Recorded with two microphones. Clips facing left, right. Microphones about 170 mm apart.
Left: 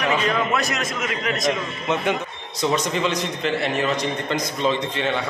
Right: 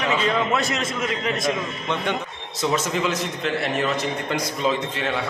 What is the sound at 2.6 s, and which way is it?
A man's voice, 5° right (ahead or behind).